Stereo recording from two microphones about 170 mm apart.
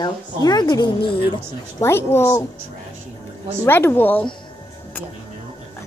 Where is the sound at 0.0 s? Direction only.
25° left (ahead or behind).